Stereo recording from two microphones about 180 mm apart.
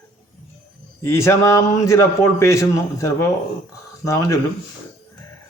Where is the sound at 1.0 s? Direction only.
15° left (ahead or behind).